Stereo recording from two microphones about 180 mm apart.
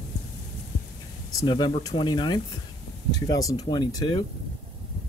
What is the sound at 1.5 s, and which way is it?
Speech, 25° left (ahead or behind).